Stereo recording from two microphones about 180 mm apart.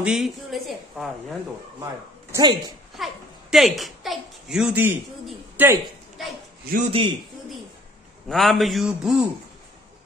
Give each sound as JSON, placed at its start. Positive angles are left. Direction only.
{"t": 0.0, "sound": "a woman's voice", "side_deg": 0}
{"t": 2.3, "sound": "a woman's voice", "side_deg": -20}
{"t": 3.0, "sound": "a child's voice", "side_deg": 0}
{"t": 6.9, "sound": "a woman's voice", "side_deg": -30}
{"t": 8.3, "sound": "a woman's voice", "side_deg": 0}